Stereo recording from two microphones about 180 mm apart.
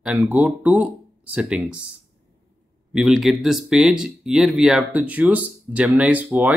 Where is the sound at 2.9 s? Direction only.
Centre (ahead or behind).